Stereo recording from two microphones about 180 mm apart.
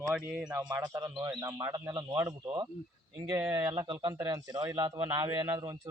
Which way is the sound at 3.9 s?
25° right (ahead or behind).